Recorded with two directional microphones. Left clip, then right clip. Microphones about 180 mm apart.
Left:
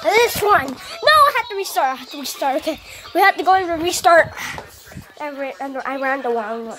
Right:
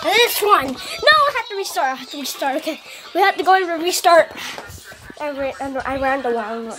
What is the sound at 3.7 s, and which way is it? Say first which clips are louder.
A child's voice: even; 10° left (ahead or behind).